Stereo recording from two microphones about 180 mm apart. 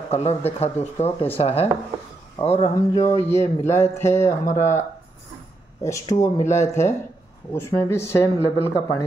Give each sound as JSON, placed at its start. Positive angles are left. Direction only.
{"t": 0.1, "sound": "speech", "side_deg": 35}
{"t": 2.7, "sound": "speech", "side_deg": 20}
{"t": 4.5, "sound": "speech", "side_deg": 40}
{"t": 5.8, "sound": "speech", "side_deg": 15}